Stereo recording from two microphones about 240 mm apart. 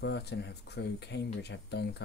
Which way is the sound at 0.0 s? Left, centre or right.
Left.